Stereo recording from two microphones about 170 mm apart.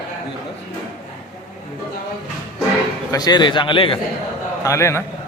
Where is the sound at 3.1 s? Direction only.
25° left (ahead or behind).